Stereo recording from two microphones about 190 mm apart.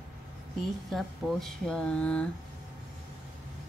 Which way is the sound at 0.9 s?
Centre (ahead or behind).